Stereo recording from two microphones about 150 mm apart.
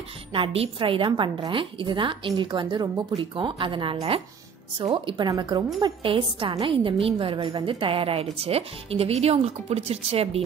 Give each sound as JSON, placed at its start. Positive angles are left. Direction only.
{"t": 0.3, "sound": "a woman's voice", "side_deg": -35}